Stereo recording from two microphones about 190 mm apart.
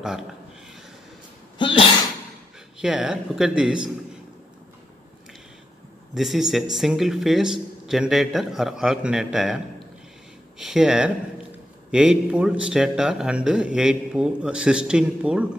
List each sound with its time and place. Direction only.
1.6 s sneeze: 25° left (ahead or behind)
2.8 s a man's voice: 5° right (ahead or behind)
6.1 s a man's voice: centre (ahead or behind)
10.6 s a man's voice: centre (ahead or behind)